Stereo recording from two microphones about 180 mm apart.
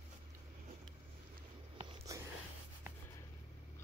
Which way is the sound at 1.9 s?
20° right (ahead or behind).